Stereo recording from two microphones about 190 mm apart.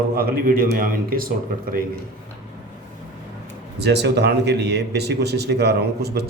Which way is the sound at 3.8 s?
60° right (ahead or behind).